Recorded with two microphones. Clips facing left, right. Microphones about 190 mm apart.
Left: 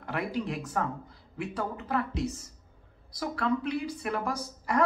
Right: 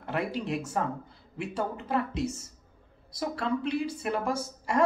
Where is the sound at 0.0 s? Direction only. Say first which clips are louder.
Right 1 dB; 25° right (ahead or behind).